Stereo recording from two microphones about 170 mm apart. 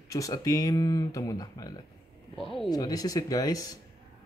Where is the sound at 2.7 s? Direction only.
20° left (ahead or behind).